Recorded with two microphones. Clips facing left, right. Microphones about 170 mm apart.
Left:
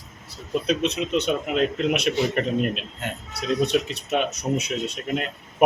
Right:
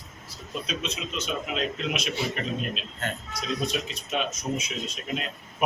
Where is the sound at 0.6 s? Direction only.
65° left (ahead or behind).